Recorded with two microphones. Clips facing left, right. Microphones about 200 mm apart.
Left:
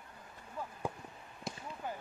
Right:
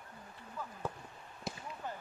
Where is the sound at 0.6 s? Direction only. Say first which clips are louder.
Left 2 dB; 30° left (ahead or behind).